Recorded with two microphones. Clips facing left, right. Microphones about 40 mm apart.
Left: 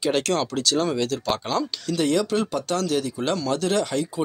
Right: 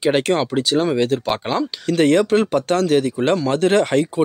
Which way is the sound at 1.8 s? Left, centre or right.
Right.